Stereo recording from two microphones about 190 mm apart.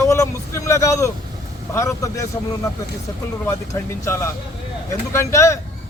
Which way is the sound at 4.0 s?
15° left (ahead or behind).